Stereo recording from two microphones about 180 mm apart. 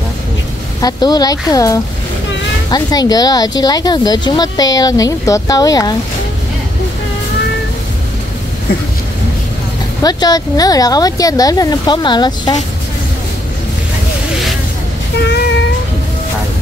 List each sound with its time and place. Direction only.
0.7 s speech: 20° left (ahead or behind)
10.0 s speech: 20° left (ahead or behind)